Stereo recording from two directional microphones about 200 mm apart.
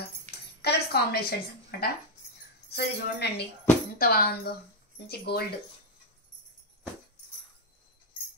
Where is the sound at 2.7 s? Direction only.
55° left (ahead or behind).